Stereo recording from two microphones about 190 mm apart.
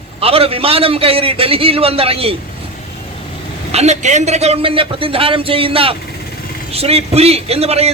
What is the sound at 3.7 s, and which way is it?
A man's voice, 35° right (ahead or behind).